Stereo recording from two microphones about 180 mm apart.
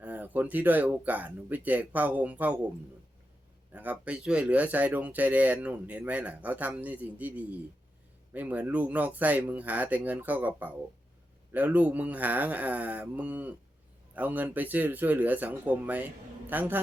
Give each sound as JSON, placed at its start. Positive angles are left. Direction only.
{"t": 0.0, "sound": "speech", "side_deg": -10}
{"t": 3.7, "sound": "speech", "side_deg": -10}